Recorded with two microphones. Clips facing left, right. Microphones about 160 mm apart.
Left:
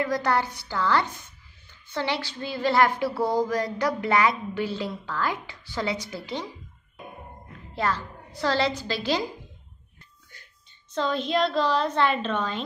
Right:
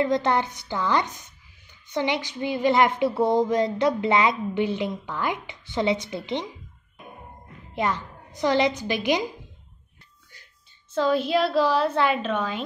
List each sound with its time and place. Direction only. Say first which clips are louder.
0.0 s a sound: right 3 dB; 25° right (ahead or behind)
7.7 s a woman's voice: right 1 dB; 20° right (ahead or behind)
10.9 s a woman's voice: right 4 dB; 5° right (ahead or behind)